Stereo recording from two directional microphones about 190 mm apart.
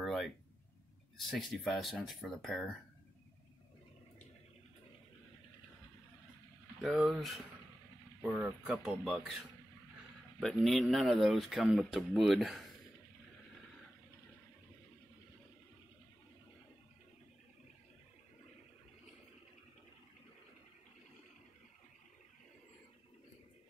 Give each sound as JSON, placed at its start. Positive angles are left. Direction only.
{"t": 0.0, "sound": "a sound", "side_deg": 0}
{"t": 1.1, "sound": "speech", "side_deg": 0}
{"t": 6.8, "sound": "speech", "side_deg": 0}
{"t": 10.4, "sound": "speech", "side_deg": 0}